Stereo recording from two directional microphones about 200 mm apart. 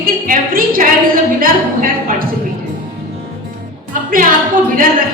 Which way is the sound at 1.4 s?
45° right (ahead or behind).